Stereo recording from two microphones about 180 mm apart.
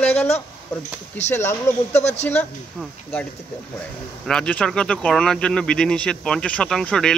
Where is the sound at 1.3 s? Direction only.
15° left (ahead or behind).